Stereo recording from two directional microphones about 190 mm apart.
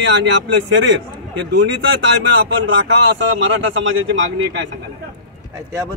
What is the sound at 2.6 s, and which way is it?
A man's voice, 90° right.